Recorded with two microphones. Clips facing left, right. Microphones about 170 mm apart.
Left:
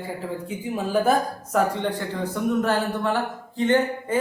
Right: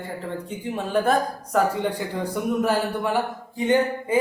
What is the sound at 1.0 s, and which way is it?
Speech, 5° left (ahead or behind).